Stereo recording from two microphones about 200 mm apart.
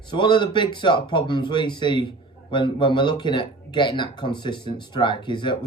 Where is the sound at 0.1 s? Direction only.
25° left (ahead or behind).